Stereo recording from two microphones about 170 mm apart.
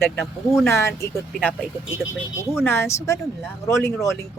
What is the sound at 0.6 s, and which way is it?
Speech, 15° left (ahead or behind).